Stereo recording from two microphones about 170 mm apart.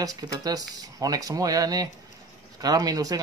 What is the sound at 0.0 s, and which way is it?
Speech, 20° right (ahead or behind).